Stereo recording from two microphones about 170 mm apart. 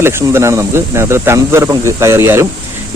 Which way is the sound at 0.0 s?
15° right (ahead or behind).